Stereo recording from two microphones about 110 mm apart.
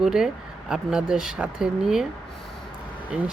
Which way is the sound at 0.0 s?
5° right (ahead or behind).